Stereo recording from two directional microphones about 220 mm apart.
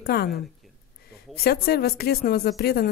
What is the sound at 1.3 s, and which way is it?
A woman's voice, 45° left (ahead or behind).